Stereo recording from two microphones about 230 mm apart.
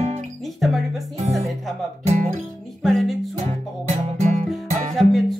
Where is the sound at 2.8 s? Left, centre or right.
Centre.